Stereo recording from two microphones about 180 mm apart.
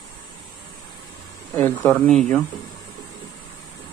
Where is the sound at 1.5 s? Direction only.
10° left (ahead or behind).